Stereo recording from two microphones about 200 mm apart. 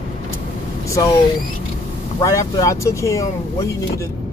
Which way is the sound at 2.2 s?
15° left (ahead or behind).